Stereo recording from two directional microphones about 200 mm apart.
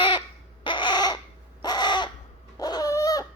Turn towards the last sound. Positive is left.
turn(degrees=15)  # may be behind; listen again after turning